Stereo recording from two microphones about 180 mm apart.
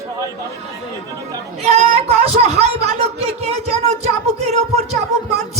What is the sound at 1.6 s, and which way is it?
Speech, 35° right (ahead or behind).